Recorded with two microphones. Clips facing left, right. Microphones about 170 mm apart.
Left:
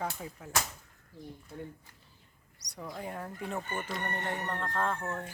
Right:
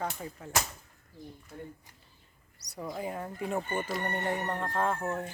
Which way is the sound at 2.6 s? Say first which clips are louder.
Right 4 dB; 5° right (ahead or behind).